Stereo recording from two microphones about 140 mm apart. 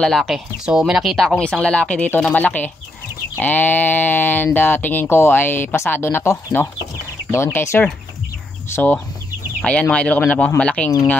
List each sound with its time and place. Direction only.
0.0 s speech: 5° left (ahead or behind)